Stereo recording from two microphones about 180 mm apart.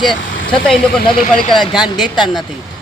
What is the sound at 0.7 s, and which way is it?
A man's voice, centre (ahead or behind).